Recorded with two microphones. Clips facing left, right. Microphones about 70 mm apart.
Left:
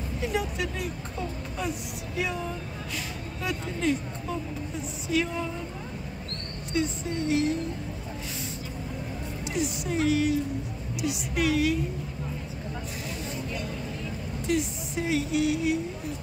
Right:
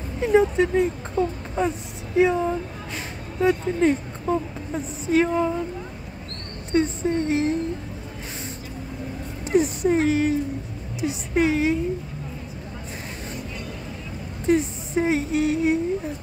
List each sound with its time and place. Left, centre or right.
0.2 s speech: right
6.7 s speech: right
9.5 s speech: right
14.4 s speech: right